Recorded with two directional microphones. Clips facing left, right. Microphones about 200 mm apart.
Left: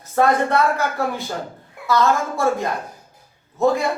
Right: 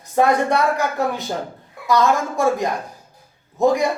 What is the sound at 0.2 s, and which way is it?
Speech, 15° right (ahead or behind).